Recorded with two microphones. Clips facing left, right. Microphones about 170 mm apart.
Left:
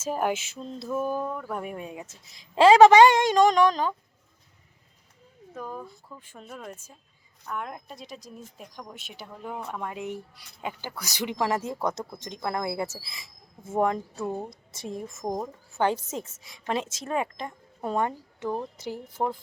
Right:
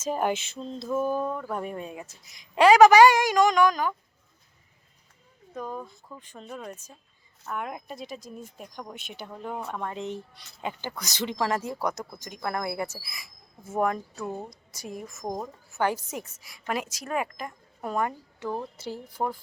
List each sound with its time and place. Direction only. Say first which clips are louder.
0.0 s speech: even; 5° left (ahead or behind); by 3.9 s 30° left (ahead or behind)
5.5 s speech: right 2 dB; 5° left (ahead or behind)
7.4 s speech: right 1 dB; 5° right (ahead or behind); by 15.2 s 25° left (ahead or behind)
15.2 s speech: left 2 dB; 15° left (ahead or behind)